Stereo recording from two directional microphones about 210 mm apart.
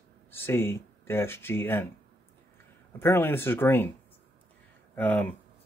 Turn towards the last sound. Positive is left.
turn(degrees=10)  # may be behind; listen again after turning